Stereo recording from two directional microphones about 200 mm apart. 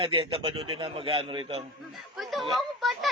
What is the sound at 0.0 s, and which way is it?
A man's voice, 25° right (ahead or behind).